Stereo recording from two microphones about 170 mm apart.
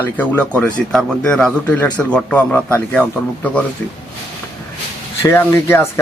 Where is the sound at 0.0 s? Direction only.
10° left (ahead or behind).